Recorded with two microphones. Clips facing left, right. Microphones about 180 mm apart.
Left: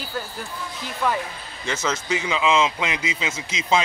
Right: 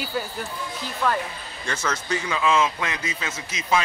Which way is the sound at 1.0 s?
10° left (ahead or behind).